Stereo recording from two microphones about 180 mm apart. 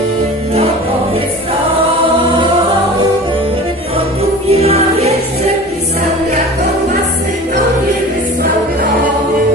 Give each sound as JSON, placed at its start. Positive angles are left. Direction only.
{"t": 4.5, "sound": "music", "side_deg": -35}